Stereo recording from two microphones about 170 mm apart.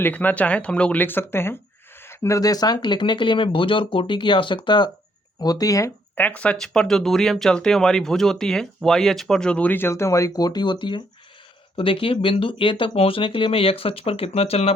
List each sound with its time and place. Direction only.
0.0 s speech: 10° left (ahead or behind); by 14.7 s 35° left (ahead or behind)